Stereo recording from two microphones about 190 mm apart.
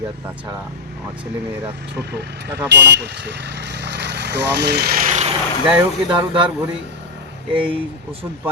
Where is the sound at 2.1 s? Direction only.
60° right (ahead or behind); by 5.2 s 45° right (ahead or behind).